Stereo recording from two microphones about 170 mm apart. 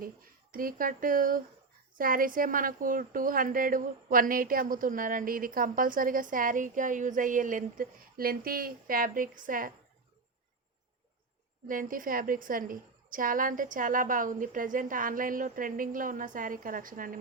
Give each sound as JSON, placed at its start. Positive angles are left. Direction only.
{"t": 0.5, "sound": "a woman's voice", "side_deg": -55}
{"t": 11.7, "sound": "a woman's voice", "side_deg": -55}